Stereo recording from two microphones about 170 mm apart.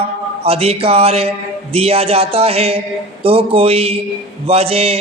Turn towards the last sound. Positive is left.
turn(degrees=-35)  # may be behind; listen again after turning